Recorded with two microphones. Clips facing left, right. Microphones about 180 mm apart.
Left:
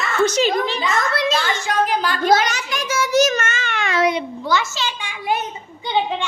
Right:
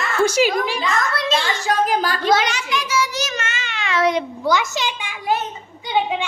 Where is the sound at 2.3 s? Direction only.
40° left (ahead or behind).